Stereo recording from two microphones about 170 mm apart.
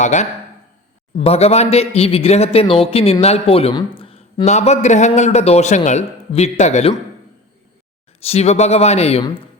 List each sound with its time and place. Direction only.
0.0 s a man's voice: 45° left (ahead or behind)
8.2 s a man's voice: 40° left (ahead or behind)